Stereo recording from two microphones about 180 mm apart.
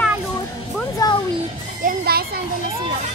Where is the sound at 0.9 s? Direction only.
20° left (ahead or behind).